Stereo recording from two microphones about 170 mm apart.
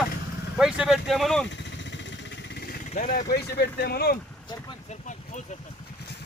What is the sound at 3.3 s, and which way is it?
Speech, 75° left (ahead or behind).